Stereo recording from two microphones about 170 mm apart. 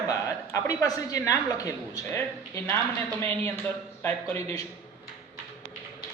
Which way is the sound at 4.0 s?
15° left (ahead or behind).